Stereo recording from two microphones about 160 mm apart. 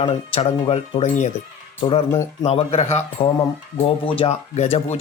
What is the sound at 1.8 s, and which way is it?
A man's voice, 30° left (ahead or behind).